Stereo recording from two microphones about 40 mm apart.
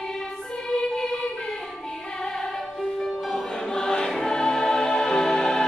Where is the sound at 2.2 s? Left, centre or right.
Centre.